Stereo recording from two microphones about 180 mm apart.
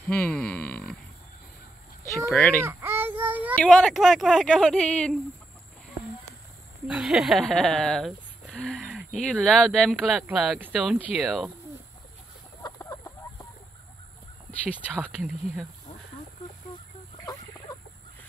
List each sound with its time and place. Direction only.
0.1 s a sound: 5° left (ahead or behind)
2.2 s speech: 5° left (ahead or behind)
2.6 s child singing: 15° right (ahead or behind)
3.5 s speech: 5° left (ahead or behind)
6.9 s speech: 5° right (ahead or behind)
12.6 s chicken: 20° left (ahead or behind)
14.7 s speech: 5° right (ahead or behind)